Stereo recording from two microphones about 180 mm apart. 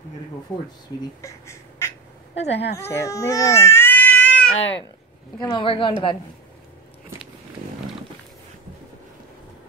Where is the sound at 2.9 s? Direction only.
15° left (ahead or behind).